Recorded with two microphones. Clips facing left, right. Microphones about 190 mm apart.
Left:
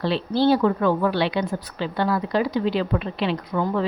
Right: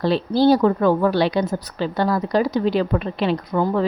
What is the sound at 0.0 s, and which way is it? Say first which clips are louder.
A woman's voice: right 4 dB; 40° right (ahead or behind).